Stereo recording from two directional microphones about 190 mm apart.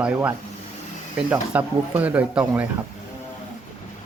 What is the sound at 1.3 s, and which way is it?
Speech, 10° right (ahead or behind).